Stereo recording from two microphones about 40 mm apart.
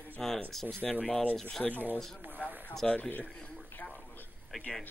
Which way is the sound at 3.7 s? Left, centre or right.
Left.